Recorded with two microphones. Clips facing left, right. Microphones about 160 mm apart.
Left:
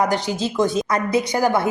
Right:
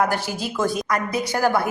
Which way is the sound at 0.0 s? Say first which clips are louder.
Left 2 dB; 20° left (ahead or behind).